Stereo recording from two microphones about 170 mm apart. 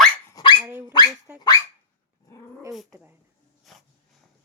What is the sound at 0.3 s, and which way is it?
Dog, 25° left (ahead or behind).